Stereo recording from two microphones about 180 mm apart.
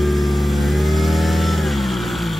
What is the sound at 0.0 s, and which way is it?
Vehicle, centre (ahead or behind).